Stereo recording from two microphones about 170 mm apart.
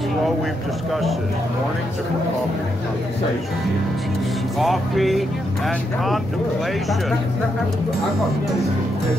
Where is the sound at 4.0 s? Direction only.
Centre (ahead or behind).